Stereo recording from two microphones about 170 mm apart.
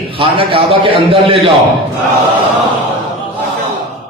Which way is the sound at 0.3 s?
30° right (ahead or behind).